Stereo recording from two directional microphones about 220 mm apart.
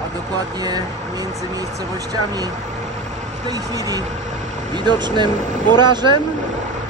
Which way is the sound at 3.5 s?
15° right (ahead or behind).